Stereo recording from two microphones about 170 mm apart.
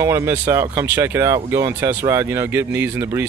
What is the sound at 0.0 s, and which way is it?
Speech, 15° right (ahead or behind).